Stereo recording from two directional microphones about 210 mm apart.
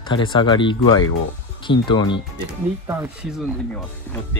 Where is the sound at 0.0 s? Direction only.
20° left (ahead or behind).